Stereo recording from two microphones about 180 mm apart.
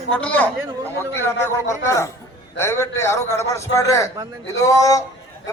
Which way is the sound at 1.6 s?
15° left (ahead or behind).